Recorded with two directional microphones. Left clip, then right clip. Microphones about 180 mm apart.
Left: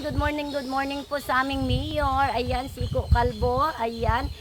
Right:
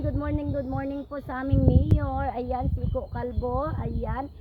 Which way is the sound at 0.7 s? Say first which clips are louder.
Left 5 dB; 20° left (ahead or behind).